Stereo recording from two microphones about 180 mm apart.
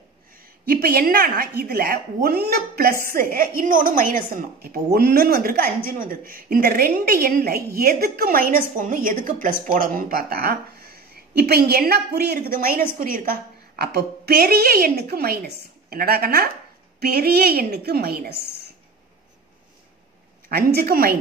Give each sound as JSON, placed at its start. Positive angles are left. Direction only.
{"t": 0.7, "sound": "a woman's voice", "side_deg": -55}
{"t": 20.4, "sound": "a woman's voice", "side_deg": -60}